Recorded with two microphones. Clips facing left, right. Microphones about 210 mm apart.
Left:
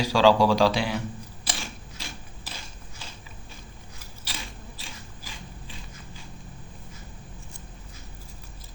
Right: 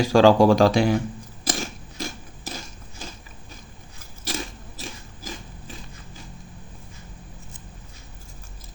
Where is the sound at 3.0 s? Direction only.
45° right (ahead or behind).